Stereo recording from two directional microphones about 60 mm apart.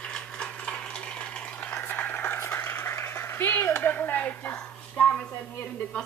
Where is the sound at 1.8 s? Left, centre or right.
Left.